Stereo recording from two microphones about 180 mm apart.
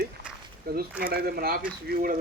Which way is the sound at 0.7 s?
60° right (ahead or behind).